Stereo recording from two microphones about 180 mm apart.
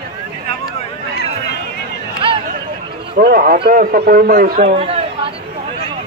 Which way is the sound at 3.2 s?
50° right (ahead or behind).